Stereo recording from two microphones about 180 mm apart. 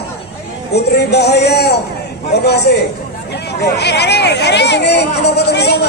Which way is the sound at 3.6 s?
70° left (ahead or behind).